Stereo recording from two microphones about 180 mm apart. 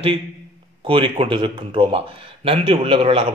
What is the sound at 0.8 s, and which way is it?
Speech, 30° right (ahead or behind).